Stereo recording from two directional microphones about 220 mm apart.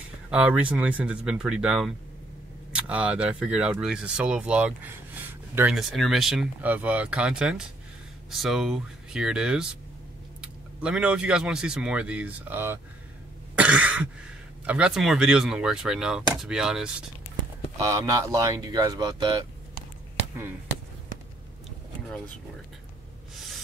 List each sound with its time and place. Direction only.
0.3 s speech: 5° right (ahead or behind)
13.6 s cough: 5° right (ahead or behind)
14.7 s speech: 5° right (ahead or behind)
17.8 s speech: 15° right (ahead or behind)